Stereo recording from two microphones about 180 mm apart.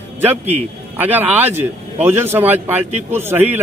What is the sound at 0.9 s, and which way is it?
Speech, 10° right (ahead or behind).